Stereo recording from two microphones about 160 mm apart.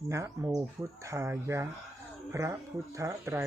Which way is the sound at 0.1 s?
20° right (ahead or behind).